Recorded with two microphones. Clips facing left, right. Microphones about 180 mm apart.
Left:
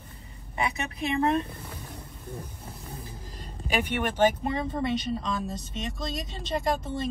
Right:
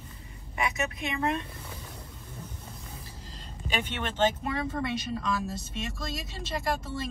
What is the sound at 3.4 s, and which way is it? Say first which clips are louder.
Speech: left 4 dB; 10° left (ahead or behind).